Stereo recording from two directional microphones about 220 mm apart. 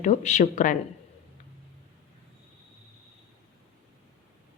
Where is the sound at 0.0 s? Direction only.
30° left (ahead or behind).